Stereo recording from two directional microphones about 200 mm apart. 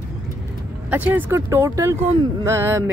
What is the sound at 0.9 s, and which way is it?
Speech, 10° right (ahead or behind).